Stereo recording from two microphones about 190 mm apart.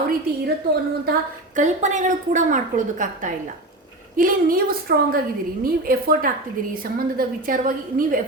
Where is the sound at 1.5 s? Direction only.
40° right (ahead or behind).